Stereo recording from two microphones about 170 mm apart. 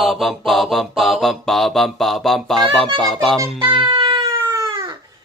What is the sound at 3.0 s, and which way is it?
Music, centre (ahead or behind).